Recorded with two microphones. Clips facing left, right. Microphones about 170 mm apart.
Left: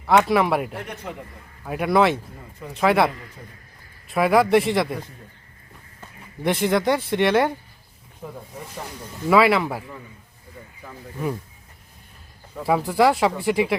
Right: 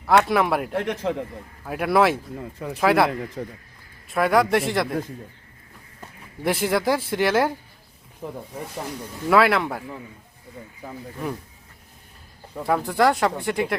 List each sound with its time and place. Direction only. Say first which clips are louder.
0.0 s speech: left 1 dB; centre (ahead or behind)
0.7 s a man's voice: right 8 dB; 85° right
1.6 s speech: left 1 dB; centre (ahead or behind)
3.4 s speech: right 12 dB; 60° right (ahead or behind)
4.1 s speech: left 2 dB; centre (ahead or behind)
6.4 s speech: left 2 dB; 5° right (ahead or behind)
8.2 s speech: right 3 dB; 15° right (ahead or behind)
9.3 s speech: left 1 dB; centre (ahead or behind)
12.6 s speech: left 2 dB; 5° left (ahead or behind)